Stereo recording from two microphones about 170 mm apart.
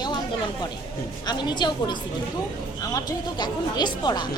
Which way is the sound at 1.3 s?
25° left (ahead or behind).